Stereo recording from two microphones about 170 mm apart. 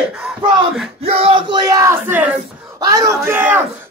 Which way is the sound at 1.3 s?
25° right (ahead or behind).